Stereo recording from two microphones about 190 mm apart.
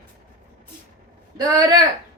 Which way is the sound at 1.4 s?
20° right (ahead or behind).